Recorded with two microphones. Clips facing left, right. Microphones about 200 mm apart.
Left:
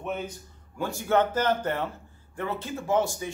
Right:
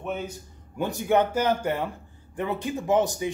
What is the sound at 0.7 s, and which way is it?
Speech, 20° right (ahead or behind).